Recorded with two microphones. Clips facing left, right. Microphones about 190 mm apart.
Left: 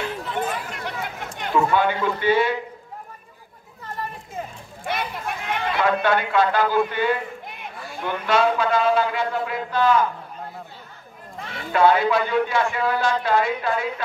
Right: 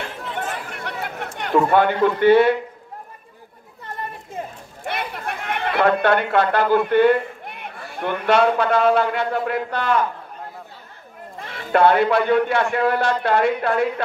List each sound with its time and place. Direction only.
0.7 s a sound: 60° right (ahead or behind)
4.8 s speech: 60° right (ahead or behind)
11.7 s speech: 60° right (ahead or behind)